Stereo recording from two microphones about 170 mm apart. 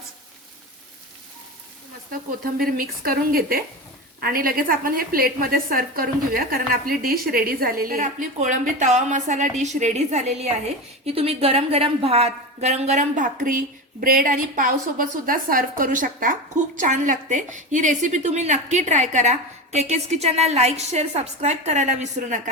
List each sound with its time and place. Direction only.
2.6 s a woman's voice: 60° right (ahead or behind); by 22.4 s 45° right (ahead or behind)